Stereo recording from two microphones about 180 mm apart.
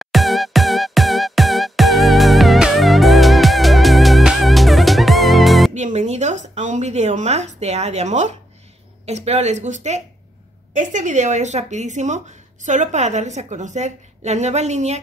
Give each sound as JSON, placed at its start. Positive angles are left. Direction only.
{"t": 0.0, "sound": "music", "side_deg": 0}
{"t": 5.8, "sound": "a sound", "side_deg": -40}
{"t": 9.0, "sound": "speech", "side_deg": -35}